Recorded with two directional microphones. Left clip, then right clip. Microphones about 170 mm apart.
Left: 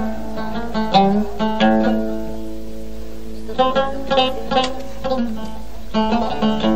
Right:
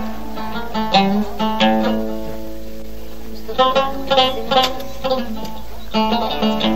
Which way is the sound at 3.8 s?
35° right (ahead or behind).